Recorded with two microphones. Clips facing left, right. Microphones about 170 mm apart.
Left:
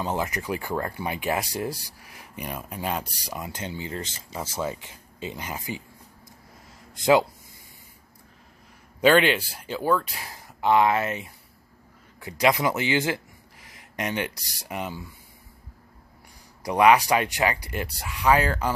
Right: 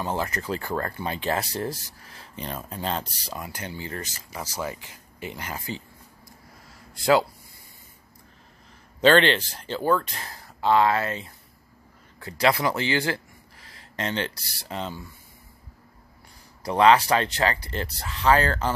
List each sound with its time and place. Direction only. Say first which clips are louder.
0.0 s speech: even; 15° left (ahead or behind)
7.0 s speech: left 1 dB; 20° left (ahead or behind)
9.0 s speech: even; 10° left (ahead or behind)
16.6 s speech: even; 15° left (ahead or behind)